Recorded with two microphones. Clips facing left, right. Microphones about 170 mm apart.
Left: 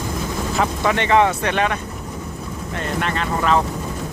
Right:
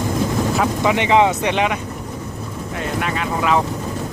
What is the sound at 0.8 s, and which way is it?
Speech, 15° right (ahead or behind).